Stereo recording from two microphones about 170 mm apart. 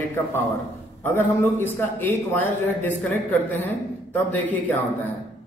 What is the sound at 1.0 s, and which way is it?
A man's voice, 15° left (ahead or behind).